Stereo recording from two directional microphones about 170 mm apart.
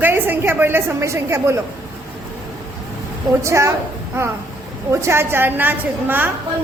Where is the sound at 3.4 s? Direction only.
15° right (ahead or behind).